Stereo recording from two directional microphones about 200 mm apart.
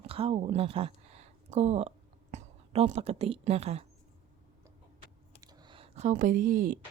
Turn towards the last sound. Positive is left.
turn(degrees=-45)  # may be behind; listen again after turning